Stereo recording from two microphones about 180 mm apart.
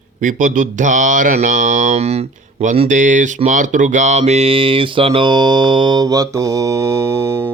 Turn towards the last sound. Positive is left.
turn(degrees=-15)  # may be behind; listen again after turning